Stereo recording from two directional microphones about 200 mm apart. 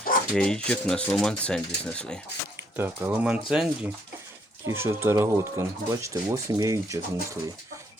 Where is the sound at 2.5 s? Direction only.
10° right (ahead or behind).